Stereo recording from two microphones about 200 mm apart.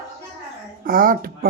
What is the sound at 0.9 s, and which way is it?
Speech, 45° right (ahead or behind).